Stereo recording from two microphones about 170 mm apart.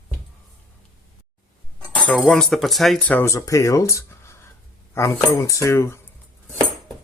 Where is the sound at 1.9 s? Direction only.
5° left (ahead or behind).